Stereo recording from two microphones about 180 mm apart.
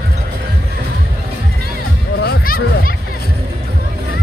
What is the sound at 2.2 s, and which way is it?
Music, 60° left (ahead or behind).